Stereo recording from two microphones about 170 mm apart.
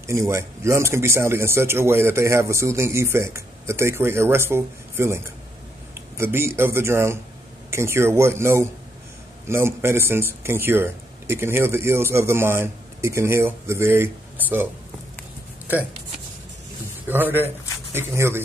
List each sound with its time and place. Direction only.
0.0 s speech: 15° right (ahead or behind)
17.1 s speech: 10° right (ahead or behind)